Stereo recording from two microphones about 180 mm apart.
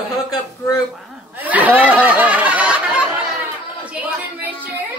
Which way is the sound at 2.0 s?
10° right (ahead or behind).